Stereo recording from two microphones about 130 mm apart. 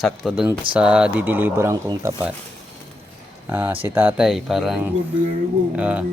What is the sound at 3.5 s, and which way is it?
Speech, 15° right (ahead or behind).